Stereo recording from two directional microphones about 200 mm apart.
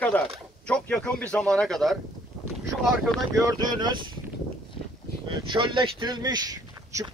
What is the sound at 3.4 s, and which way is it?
Speech, 20° right (ahead or behind).